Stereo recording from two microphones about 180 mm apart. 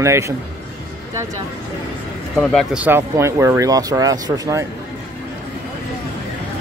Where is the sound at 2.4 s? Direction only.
Centre (ahead or behind); by 4.6 s 20° right (ahead or behind).